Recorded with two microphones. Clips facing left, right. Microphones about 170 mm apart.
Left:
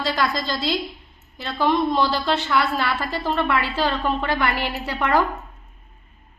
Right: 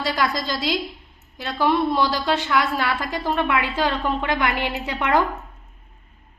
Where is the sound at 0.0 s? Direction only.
15° right (ahead or behind).